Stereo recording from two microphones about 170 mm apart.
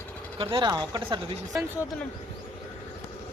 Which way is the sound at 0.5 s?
25° right (ahead or behind).